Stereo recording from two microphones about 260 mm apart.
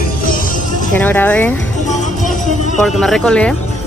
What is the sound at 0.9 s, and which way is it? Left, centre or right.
Speech, centre.